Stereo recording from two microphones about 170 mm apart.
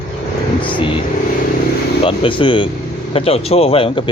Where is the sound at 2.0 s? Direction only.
30° left (ahead or behind).